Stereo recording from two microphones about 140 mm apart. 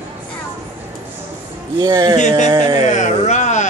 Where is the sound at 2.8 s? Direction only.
55° left (ahead or behind).